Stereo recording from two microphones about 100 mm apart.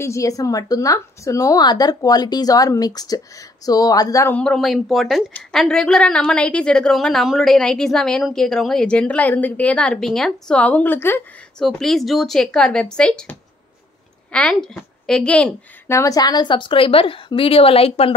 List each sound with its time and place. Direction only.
0.0 s speech: 30° left (ahead or behind)
4.3 s a woman's voice: 10° left (ahead or behind)
4.6 s a woman's voice: centre (ahead or behind); by 11.2 s 20° left (ahead or behind)
11.5 s a woman's voice: 5° left (ahead or behind)
15.9 s a woman's voice: 35° left (ahead or behind); by 18.1 s 80° left